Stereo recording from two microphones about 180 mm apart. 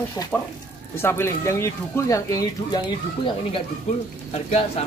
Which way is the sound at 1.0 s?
15° left (ahead or behind).